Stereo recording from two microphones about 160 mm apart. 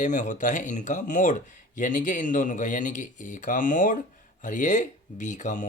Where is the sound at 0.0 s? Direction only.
50° left (ahead or behind).